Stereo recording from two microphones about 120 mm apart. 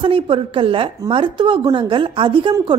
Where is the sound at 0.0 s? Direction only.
45° right (ahead or behind).